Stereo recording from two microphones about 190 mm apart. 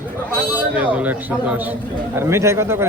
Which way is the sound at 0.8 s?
10° right (ahead or behind).